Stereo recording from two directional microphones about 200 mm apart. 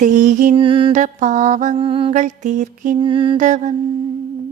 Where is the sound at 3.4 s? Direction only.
40° right (ahead or behind).